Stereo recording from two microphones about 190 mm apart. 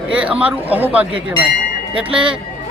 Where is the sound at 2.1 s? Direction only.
25° right (ahead or behind).